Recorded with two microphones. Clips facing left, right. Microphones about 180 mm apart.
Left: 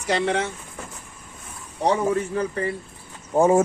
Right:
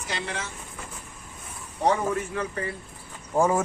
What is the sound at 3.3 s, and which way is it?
Speech, 25° left (ahead or behind).